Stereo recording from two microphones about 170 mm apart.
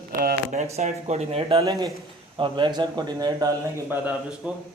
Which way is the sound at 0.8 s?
40° right (ahead or behind).